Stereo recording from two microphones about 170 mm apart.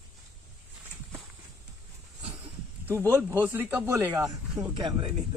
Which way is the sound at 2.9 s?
15° right (ahead or behind).